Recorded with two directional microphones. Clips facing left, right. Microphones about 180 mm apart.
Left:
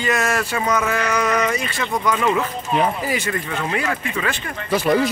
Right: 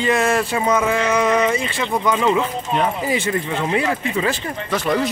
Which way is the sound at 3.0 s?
25° right (ahead or behind).